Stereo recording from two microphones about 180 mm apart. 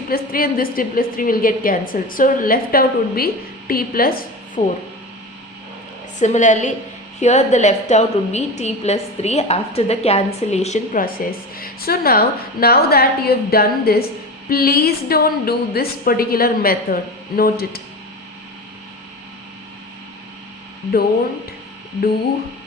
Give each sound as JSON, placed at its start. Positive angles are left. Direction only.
{"t": 0.1, "sound": "a woman's voice", "side_deg": 55}
{"t": 6.1, "sound": "a woman's voice", "side_deg": 40}